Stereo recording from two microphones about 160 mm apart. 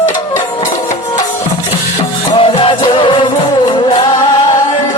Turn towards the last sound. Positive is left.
turn(degrees=30)  # may be behind; listen again after turning